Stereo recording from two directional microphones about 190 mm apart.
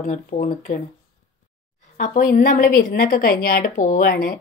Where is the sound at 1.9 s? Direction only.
45° left (ahead or behind).